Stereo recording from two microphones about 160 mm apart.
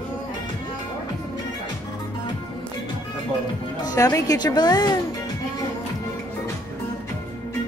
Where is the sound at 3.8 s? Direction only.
20° left (ahead or behind).